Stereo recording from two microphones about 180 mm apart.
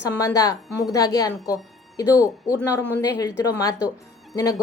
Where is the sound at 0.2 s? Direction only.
20° left (ahead or behind).